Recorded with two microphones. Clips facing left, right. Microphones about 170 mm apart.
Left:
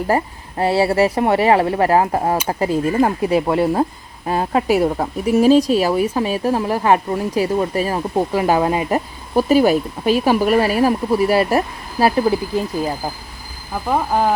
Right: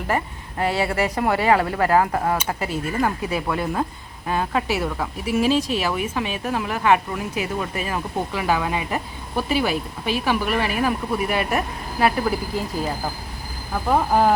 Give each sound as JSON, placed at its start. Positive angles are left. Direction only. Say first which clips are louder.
{"t": 0.6, "sound": "speech", "louder": "left 7 dB", "side_deg": 30}
{"t": 13.8, "sound": "speech", "louder": "even", "side_deg": 0}